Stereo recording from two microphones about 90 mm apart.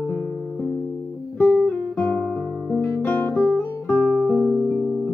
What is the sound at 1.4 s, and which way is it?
Guitar, 20° left (ahead or behind).